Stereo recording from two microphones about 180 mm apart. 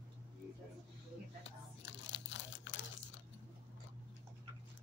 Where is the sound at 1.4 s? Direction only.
90° left.